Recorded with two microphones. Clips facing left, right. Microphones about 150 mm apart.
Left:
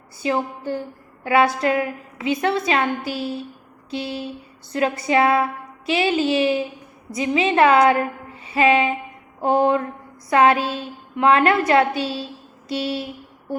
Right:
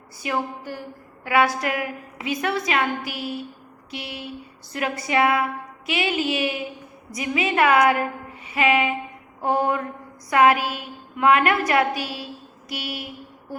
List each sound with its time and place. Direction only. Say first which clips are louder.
0.2 s a woman's voice: left 4 dB; 30° left (ahead or behind)
8.4 s music: left 3 dB; 30° left (ahead or behind)
9.4 s a woman's voice: left 4 dB; 25° left (ahead or behind)